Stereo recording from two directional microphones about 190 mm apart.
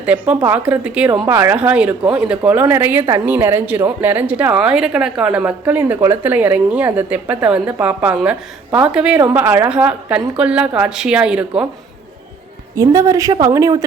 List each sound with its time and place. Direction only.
0.0 s a woman's voice: 5° right (ahead or behind)
12.7 s a woman's voice: 15° right (ahead or behind)